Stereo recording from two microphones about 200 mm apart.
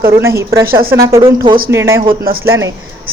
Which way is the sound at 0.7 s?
50° right (ahead or behind).